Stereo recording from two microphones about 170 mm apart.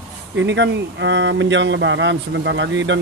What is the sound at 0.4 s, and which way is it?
Speech, 90° right.